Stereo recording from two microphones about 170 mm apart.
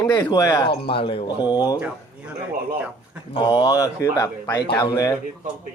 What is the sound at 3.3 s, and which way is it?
A man's voice, 30° left (ahead or behind).